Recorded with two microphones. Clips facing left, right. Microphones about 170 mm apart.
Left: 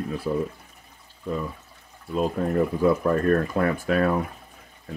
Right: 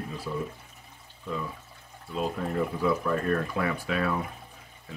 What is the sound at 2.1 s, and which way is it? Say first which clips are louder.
Speech: left 6 dB; 50° left (ahead or behind).